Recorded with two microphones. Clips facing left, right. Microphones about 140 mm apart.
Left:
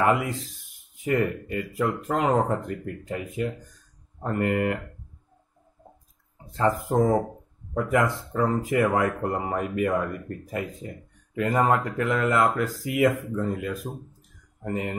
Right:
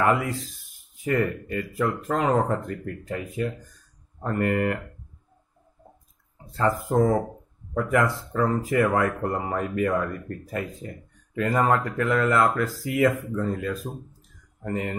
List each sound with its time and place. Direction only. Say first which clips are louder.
0.0 s speech: even; 20° left (ahead or behind)
6.4 s speech: even; 15° left (ahead or behind)